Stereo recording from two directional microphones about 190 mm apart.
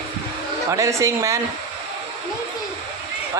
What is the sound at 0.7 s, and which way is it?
Speech, 15° right (ahead or behind).